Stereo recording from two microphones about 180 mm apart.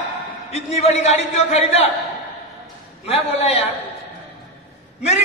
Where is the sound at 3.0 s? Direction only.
35° left (ahead or behind).